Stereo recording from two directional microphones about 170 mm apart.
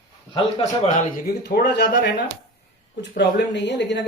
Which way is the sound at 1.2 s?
80° left.